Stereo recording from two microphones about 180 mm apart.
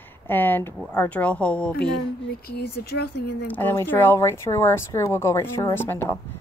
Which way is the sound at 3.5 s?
10° left (ahead or behind).